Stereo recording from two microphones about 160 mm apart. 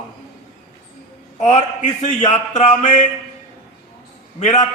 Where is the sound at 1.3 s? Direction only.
45° left (ahead or behind).